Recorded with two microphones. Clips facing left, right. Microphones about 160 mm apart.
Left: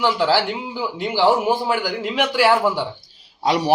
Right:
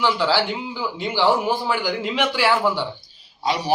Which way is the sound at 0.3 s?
15° left (ahead or behind).